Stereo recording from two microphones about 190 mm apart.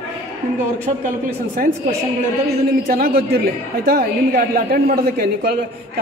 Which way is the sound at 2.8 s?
50° right (ahead or behind).